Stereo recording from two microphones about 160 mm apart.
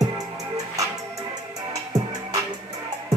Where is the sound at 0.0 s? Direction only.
20° right (ahead or behind).